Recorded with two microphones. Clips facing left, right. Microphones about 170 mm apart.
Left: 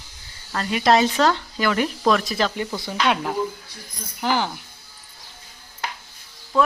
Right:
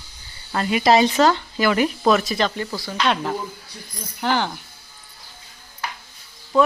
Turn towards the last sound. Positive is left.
turn(degrees=-5)  # may be behind; listen again after turning